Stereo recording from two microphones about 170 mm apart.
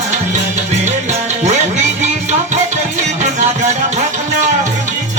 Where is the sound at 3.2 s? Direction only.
45° right (ahead or behind).